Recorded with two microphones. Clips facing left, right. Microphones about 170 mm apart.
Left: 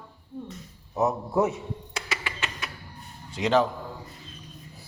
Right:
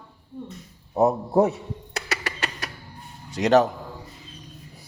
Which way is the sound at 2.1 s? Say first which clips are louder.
Right 4 dB; 40° right (ahead or behind).